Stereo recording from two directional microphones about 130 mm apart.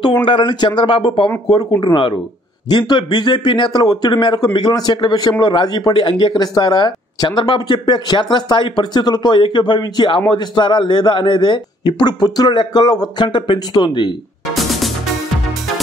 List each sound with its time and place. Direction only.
0.0 s speech: 35° left (ahead or behind)
14.5 s music: centre (ahead or behind)